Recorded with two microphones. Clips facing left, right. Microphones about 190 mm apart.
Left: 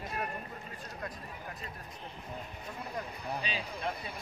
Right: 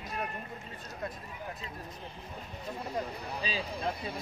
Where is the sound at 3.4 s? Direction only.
35° right (ahead or behind).